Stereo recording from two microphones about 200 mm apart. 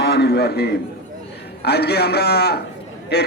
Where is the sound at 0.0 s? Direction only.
55° left (ahead or behind).